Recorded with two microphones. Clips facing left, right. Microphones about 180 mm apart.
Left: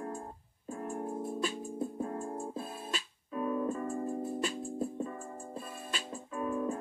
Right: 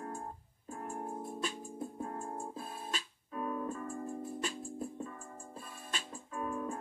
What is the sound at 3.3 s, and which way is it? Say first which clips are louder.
Music: left 5 dB; 30° left (ahead or behind).